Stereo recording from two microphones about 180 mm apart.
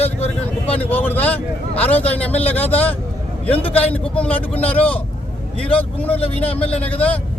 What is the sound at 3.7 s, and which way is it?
A man's voice, 10° left (ahead or behind).